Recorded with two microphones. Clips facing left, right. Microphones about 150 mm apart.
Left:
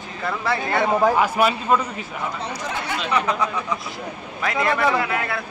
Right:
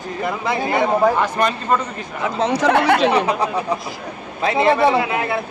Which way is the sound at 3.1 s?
35° right (ahead or behind).